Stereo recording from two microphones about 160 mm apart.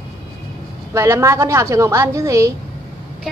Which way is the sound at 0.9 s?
15° right (ahead or behind).